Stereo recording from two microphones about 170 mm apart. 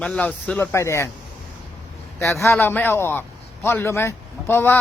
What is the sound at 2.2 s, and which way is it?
A man's voice, 15° left (ahead or behind).